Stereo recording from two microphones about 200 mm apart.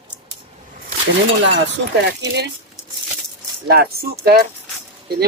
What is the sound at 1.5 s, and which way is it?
Speech, 60° right (ahead or behind).